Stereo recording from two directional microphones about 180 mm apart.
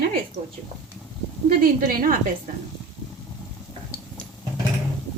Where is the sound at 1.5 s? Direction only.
55° right (ahead or behind).